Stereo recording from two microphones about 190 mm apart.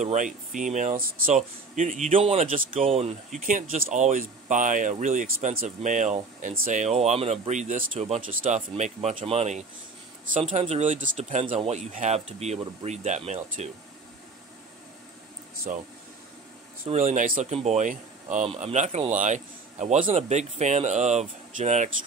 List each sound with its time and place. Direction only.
0.0 s speech: 40° right (ahead or behind)
15.7 s speech: 40° right (ahead or behind)